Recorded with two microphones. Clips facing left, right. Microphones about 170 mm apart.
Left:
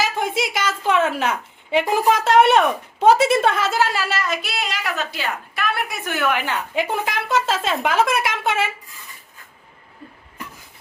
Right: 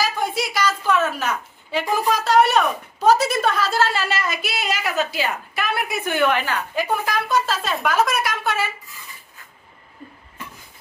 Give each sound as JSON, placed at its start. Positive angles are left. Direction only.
{"t": 0.0, "sound": "a woman's voice", "side_deg": 25}
{"t": 6.3, "sound": "speech", "side_deg": 20}